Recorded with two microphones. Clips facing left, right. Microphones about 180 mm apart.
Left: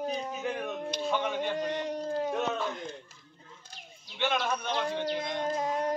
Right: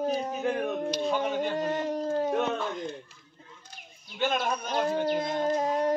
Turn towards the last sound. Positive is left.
turn(degrees=-40)  # may be behind; listen again after turning